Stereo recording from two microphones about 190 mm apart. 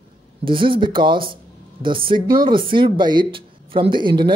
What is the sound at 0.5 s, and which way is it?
Speech, 25° right (ahead or behind).